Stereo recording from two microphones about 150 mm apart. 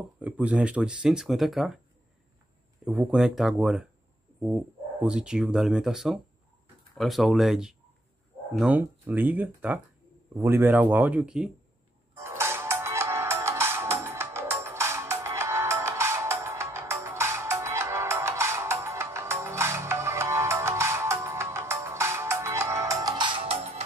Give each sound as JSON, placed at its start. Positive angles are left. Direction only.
{"t": 0.2, "sound": "speech", "side_deg": -10}
{"t": 2.8, "sound": "speech", "side_deg": -5}
{"t": 5.0, "sound": "speech", "side_deg": -5}
{"t": 12.1, "sound": "music", "side_deg": -15}